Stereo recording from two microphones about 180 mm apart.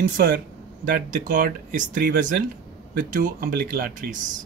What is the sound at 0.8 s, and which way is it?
Speech, 50° right (ahead or behind).